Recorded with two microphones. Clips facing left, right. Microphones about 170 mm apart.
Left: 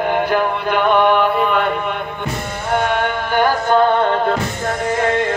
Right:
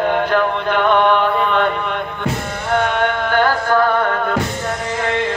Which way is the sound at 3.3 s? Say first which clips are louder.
Left 3 dB; 15° left (ahead or behind).